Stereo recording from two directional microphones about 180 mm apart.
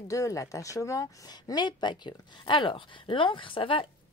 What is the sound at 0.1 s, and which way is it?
A woman's voice, 20° left (ahead or behind).